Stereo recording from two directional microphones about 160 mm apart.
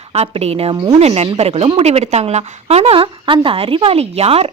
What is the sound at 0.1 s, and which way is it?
A woman's voice, 40° right (ahead or behind).